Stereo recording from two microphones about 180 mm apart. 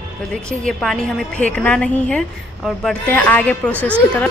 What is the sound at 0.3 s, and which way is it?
A woman's voice, 5° left (ahead or behind).